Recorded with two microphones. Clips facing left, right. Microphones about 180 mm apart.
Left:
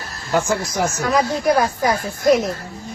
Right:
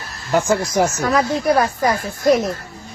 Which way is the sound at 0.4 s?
25° right (ahead or behind).